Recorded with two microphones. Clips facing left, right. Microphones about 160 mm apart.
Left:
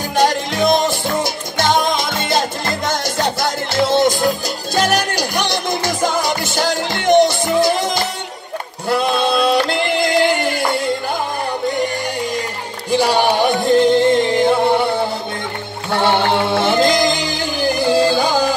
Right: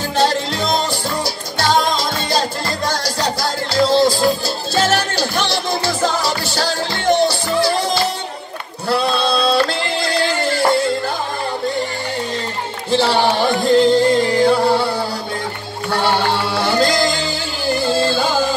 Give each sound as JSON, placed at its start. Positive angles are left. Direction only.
{"t": 0.2, "sound": "music", "side_deg": 15}
{"t": 3.7, "sound": "music", "side_deg": 20}
{"t": 8.8, "sound": "a sound", "side_deg": 15}
{"t": 12.9, "sound": "music", "side_deg": 15}